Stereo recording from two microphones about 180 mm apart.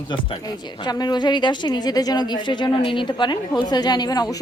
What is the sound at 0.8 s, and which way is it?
Speech, 25° left (ahead or behind).